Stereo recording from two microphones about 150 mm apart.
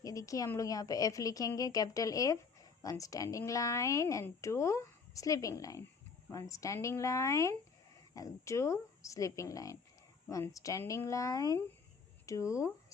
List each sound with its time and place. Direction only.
0.0 s speech: 20° left (ahead or behind)